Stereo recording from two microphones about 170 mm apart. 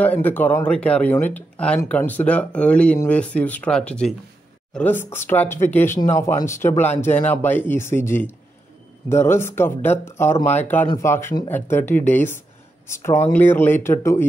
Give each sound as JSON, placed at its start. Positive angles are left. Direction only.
{"t": 0.0, "sound": "speech", "side_deg": 10}